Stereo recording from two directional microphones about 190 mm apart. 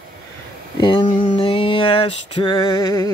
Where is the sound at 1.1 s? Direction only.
40° left (ahead or behind).